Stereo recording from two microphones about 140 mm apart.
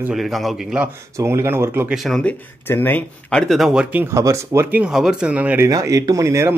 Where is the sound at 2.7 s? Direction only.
15° left (ahead or behind); by 4.8 s 20° right (ahead or behind).